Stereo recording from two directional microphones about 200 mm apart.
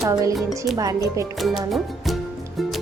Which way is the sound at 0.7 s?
15° right (ahead or behind).